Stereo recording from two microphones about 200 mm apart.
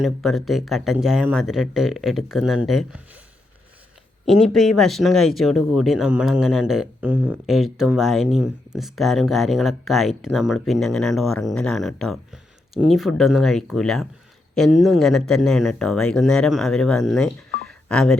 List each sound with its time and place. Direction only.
0.0 s speech: centre (ahead or behind)
4.3 s speech: centre (ahead or behind)
17.7 s telephone dialing: 5° left (ahead or behind)